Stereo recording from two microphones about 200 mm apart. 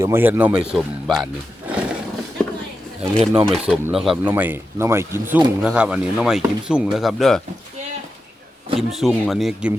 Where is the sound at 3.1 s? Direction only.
25° right (ahead or behind).